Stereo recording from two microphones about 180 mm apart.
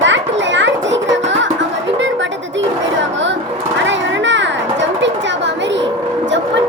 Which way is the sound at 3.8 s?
90° right.